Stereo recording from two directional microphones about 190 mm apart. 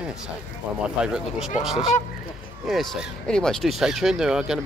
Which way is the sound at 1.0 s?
5° right (ahead or behind).